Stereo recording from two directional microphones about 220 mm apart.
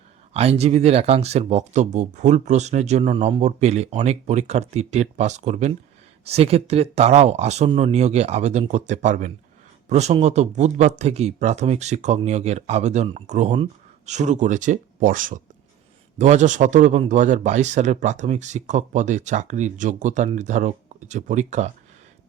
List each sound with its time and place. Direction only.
0.3 s a man's voice: 30° right (ahead or behind)